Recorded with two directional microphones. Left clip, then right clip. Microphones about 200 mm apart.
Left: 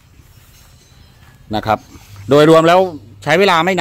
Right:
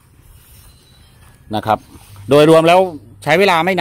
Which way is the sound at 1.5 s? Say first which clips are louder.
Even; 5° right (ahead or behind).